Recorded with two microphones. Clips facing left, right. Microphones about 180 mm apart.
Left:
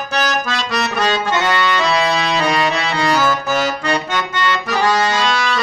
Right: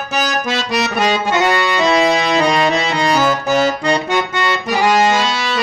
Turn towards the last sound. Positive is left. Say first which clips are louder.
# right 1 dB
turn(degrees=-20)  # may be behind; listen again after turning